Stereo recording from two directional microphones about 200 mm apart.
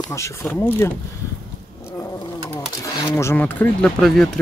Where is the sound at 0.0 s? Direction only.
15° left (ahead or behind).